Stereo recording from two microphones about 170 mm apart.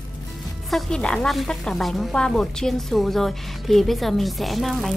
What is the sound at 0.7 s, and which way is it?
Speech, 5° left (ahead or behind).